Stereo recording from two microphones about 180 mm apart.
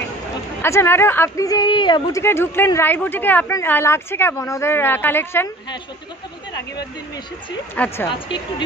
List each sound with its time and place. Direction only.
0.6 s speech: 15° left (ahead or behind)
2.2 s speech: 10° left (ahead or behind)
7.7 s speech: 10° left (ahead or behind)
8.1 s a woman's voice: 25° left (ahead or behind)